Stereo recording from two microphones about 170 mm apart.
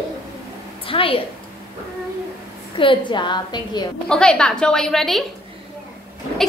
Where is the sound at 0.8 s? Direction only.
30° left (ahead or behind).